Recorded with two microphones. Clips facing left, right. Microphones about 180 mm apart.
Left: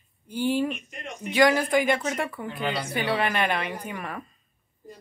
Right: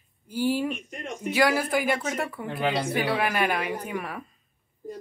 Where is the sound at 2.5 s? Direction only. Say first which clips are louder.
Right 3 dB; 70° right (ahead or behind).